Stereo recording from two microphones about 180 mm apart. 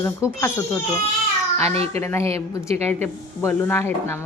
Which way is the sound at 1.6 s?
35° right (ahead or behind).